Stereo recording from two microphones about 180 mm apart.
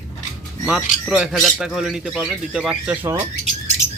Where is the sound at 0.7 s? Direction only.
5° right (ahead or behind).